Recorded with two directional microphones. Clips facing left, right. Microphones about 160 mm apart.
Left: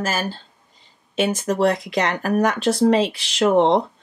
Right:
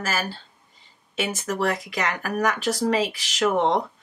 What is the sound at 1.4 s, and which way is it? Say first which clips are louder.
Speech: left 4 dB; 25° left (ahead or behind).